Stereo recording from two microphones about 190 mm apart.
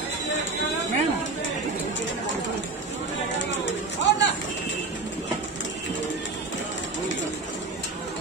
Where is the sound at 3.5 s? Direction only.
75° left (ahead or behind).